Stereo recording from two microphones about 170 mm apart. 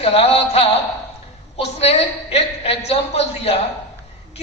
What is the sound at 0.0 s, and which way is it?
A woman's voice, 35° left (ahead or behind).